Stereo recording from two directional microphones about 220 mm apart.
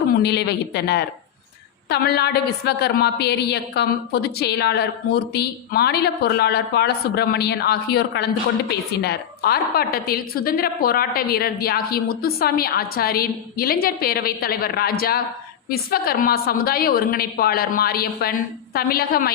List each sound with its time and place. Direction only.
0.1 s a woman's voice: 50° left (ahead or behind)